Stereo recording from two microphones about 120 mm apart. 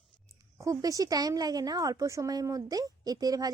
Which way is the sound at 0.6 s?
30° right (ahead or behind).